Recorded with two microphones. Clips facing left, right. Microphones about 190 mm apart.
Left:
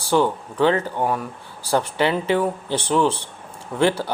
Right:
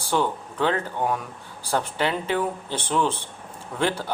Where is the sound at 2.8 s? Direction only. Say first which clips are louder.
Left 4 dB; 35° left (ahead or behind).